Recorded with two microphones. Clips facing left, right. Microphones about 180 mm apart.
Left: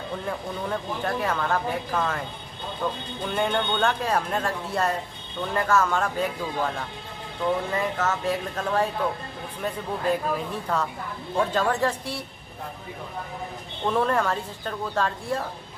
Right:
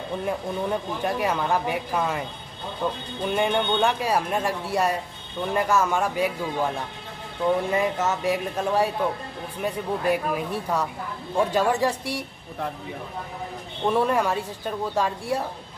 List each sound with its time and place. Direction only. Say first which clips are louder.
0.2 s speech: right 4 dB; 15° right (ahead or behind)
7.7 s speech: right 2 dB; 15° right (ahead or behind)
13.8 s speech: right 2 dB; 10° right (ahead or behind)